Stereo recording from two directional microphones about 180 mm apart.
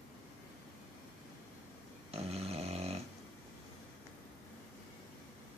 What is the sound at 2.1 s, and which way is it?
Dog, 35° right (ahead or behind).